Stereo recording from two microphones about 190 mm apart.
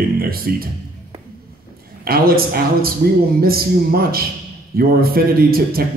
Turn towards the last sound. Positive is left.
turn(degrees=-55)  # may be behind; listen again after turning